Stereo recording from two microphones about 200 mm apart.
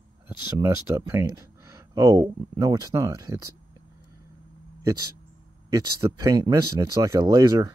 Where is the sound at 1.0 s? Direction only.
15° right (ahead or behind).